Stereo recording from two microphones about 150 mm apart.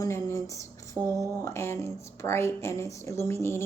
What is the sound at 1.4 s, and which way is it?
Speech, 15° left (ahead or behind).